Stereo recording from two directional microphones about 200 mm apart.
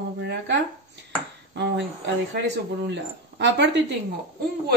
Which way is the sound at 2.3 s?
60° right (ahead or behind).